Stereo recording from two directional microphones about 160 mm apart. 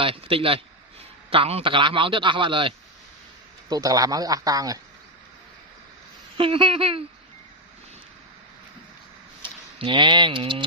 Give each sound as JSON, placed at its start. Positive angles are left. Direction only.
{"t": 0.0, "sound": "a man's voice", "side_deg": -35}
{"t": 6.3, "sound": "a man's voice", "side_deg": -35}
{"t": 9.4, "sound": "speech", "side_deg": -30}